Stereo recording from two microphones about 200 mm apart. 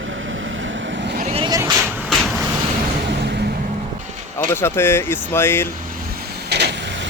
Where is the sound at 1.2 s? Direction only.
30° right (ahead or behind).